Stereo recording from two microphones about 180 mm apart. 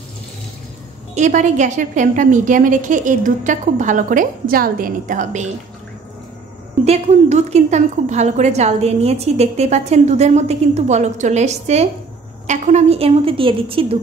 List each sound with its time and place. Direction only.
1.1 s a woman's voice: 40° right (ahead or behind)
6.8 s a woman's voice: 40° right (ahead or behind)